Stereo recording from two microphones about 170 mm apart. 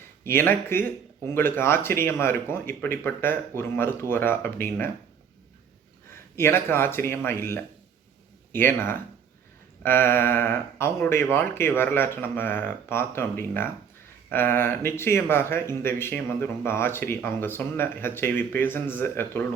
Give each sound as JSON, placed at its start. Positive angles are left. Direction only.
{"t": 0.3, "sound": "speech", "side_deg": 15}
{"t": 6.3, "sound": "speech", "side_deg": 15}